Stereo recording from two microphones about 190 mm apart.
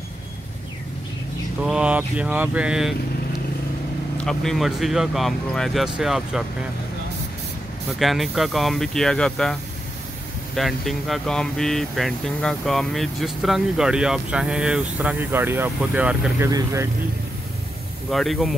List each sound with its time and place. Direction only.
1.6 s speech: 5° right (ahead or behind)
4.2 s speech: 5° left (ahead or behind)
8.0 s speech: centre (ahead or behind); by 16.9 s 15° right (ahead or behind)
18.1 s speech: centre (ahead or behind)